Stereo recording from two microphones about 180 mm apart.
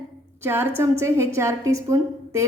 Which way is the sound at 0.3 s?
15° right (ahead or behind).